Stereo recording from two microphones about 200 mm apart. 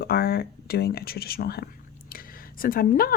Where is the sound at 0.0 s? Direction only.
50° left (ahead or behind).